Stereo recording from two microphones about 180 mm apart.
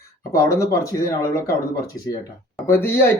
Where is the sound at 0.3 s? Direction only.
15° left (ahead or behind).